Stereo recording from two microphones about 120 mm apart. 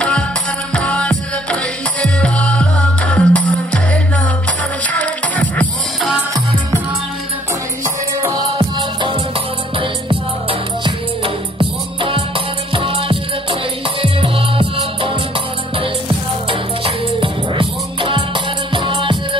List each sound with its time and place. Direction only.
0.7 s music: 10° left (ahead or behind)
8.5 s music: 45° right (ahead or behind)
12.7 s music: 50° right (ahead or behind)
16.4 s music: 45° right (ahead or behind)